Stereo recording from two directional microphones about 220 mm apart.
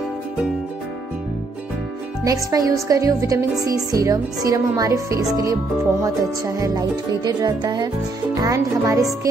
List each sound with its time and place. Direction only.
2.2 s speech: 15° right (ahead or behind)